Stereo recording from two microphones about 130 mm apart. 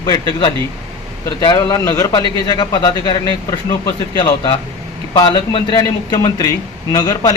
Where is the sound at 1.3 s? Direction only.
30° left (ahead or behind).